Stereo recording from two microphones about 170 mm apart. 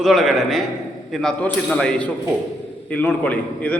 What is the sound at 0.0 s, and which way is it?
A man's voice, centre (ahead or behind).